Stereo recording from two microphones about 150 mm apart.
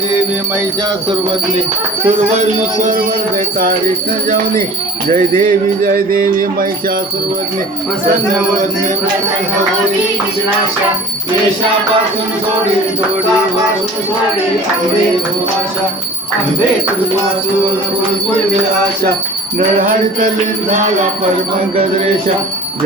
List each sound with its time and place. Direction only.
2.0 s speech: 50° right (ahead or behind)
5.4 s music: 70° right (ahead or behind)